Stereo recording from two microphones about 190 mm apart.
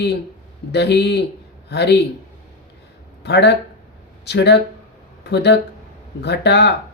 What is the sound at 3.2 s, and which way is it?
Speech, 65° left (ahead or behind).